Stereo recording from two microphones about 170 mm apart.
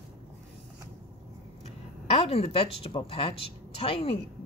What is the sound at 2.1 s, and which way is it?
Speech, 35° left (ahead or behind).